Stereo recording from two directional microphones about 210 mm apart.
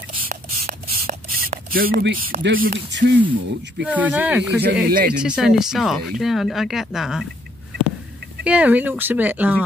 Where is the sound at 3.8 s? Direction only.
5° right (ahead or behind).